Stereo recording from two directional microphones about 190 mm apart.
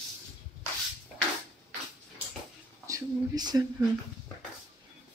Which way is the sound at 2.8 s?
20° right (ahead or behind).